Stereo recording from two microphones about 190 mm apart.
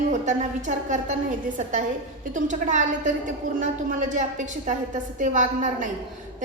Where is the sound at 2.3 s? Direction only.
40° right (ahead or behind).